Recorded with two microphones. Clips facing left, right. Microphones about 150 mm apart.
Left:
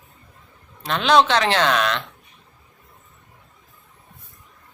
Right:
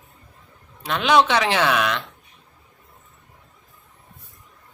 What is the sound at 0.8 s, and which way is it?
A man's voice, 10° right (ahead or behind).